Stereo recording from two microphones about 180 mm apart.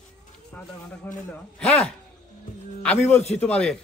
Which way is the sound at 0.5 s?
10° left (ahead or behind).